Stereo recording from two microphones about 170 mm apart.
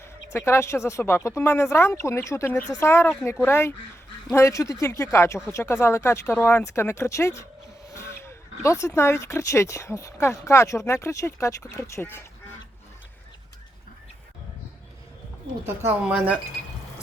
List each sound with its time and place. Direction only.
0.0 s speech: 15° left (ahead or behind)
15.6 s speech: 10° right (ahead or behind)